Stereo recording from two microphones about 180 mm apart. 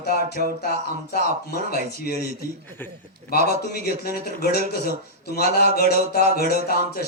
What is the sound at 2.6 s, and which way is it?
Speech, 10° left (ahead or behind).